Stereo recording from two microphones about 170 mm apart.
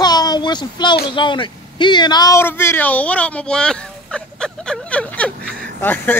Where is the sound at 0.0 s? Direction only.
25° left (ahead or behind).